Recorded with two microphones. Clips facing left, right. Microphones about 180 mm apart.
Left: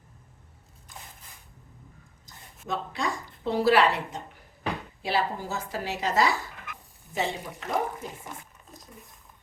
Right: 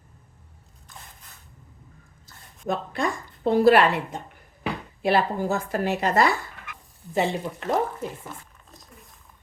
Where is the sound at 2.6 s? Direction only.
55° right (ahead or behind).